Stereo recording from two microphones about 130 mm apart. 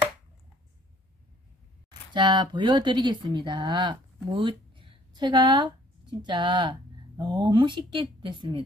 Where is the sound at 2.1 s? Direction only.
35° right (ahead or behind).